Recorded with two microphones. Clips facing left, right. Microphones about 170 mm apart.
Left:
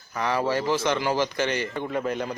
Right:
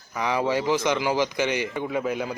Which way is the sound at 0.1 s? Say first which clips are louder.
Right 1 dB; 10° right (ahead or behind).